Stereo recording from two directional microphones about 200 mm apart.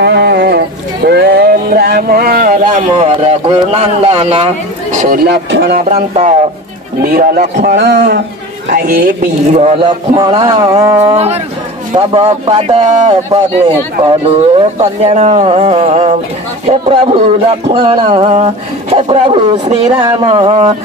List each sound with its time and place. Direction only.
0.0 s a sound: 55° right (ahead or behind)
2.7 s speech: 35° right (ahead or behind)
5.2 s speech: 55° right (ahead or behind)
5.9 s speech: 35° right (ahead or behind)
7.0 s a man's voice: 45° right (ahead or behind)
8.7 s a man's voice: 45° right (ahead or behind)
9.6 s speech: 30° right (ahead or behind); by 11.0 s 15° right (ahead or behind)
11.1 s speech: 30° right (ahead or behind)
14.3 s speech: 35° right (ahead or behind)